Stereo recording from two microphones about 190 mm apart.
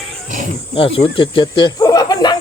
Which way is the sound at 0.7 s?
30° left (ahead or behind).